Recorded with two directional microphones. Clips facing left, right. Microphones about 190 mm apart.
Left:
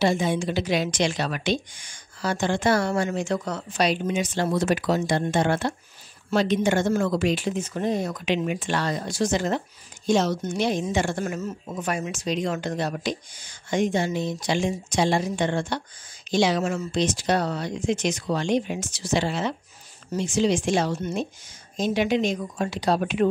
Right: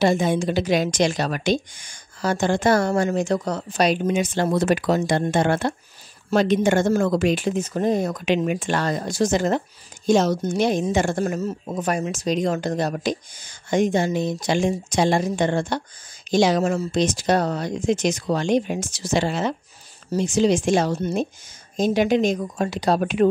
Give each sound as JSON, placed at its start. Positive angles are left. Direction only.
{"t": 0.0, "sound": "a woman's voice", "side_deg": -45}